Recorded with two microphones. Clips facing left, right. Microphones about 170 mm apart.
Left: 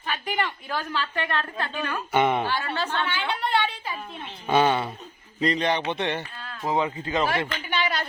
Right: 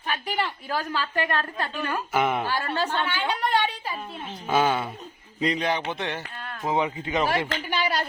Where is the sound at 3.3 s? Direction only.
45° right (ahead or behind).